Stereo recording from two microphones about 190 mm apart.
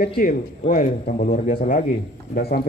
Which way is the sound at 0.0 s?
50° left (ahead or behind).